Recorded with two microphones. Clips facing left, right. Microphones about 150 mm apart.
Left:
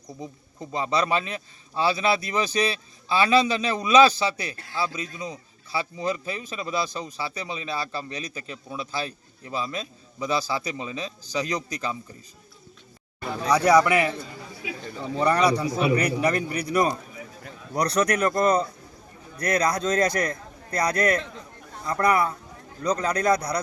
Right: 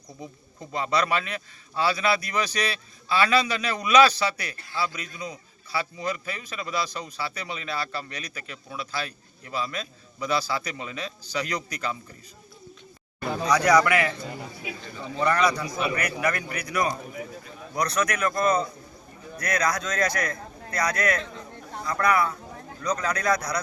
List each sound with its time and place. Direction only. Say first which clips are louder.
0.7 s a man's voice: left 1 dB; 20° left (ahead or behind)
13.5 s a man's voice: left 2 dB; 25° left (ahead or behind)
15.2 s a man's voice: left 2 dB; 35° left (ahead or behind)